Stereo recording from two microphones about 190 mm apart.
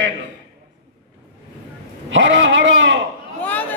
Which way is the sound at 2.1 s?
75° right (ahead or behind).